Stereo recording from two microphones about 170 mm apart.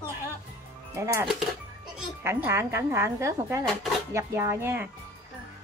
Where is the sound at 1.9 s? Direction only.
10° right (ahead or behind).